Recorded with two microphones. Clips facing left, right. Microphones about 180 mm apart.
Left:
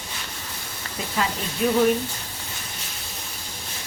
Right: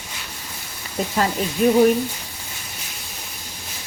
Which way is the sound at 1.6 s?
45° right (ahead or behind).